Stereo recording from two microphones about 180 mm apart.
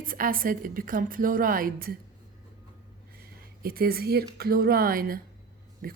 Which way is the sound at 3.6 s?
55° right (ahead or behind).